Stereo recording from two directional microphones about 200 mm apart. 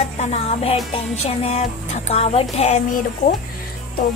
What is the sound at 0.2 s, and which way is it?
Speech, 30° left (ahead or behind).